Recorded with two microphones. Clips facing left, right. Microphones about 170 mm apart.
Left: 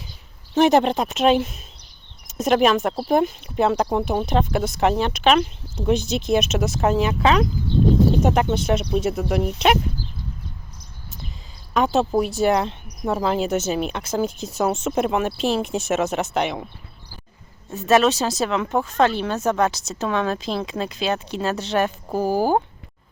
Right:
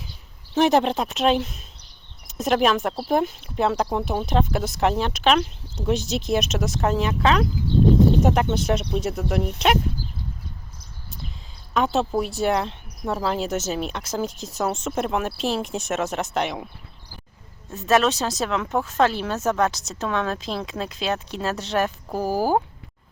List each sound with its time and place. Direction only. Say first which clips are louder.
0.5 s speech: left 2 dB; centre (ahead or behind)
11.7 s a woman's voice: left 3 dB; centre (ahead or behind)
17.7 s speech: left 3 dB; centre (ahead or behind)